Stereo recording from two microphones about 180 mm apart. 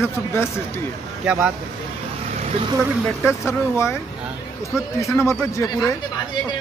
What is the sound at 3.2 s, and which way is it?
Speech, 15° left (ahead or behind).